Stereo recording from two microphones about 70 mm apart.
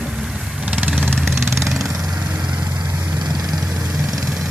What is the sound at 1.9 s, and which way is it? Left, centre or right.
Vehicle, right.